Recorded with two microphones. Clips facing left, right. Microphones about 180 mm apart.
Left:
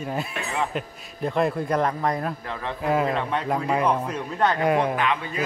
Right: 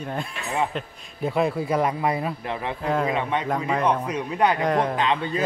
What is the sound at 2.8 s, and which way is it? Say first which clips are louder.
A man's voice: left 2 dB; 5° left (ahead or behind).